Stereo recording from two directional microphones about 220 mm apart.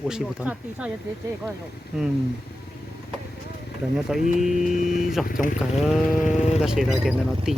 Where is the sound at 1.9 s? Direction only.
5° right (ahead or behind).